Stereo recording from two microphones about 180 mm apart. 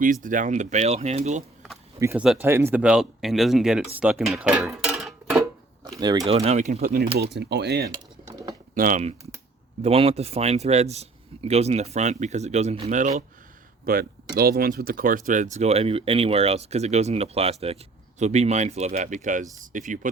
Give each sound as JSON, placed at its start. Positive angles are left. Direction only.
{"t": 0.0, "sound": "speech", "side_deg": -50}
{"t": 2.0, "sound": "speech", "side_deg": -15}
{"t": 6.0, "sound": "speech", "side_deg": -25}
{"t": 6.3, "sound": "speech", "side_deg": -35}
{"t": 7.2, "sound": "speech", "side_deg": -70}
{"t": 8.7, "sound": "speech", "side_deg": -50}
{"t": 13.8, "sound": "speech", "side_deg": -55}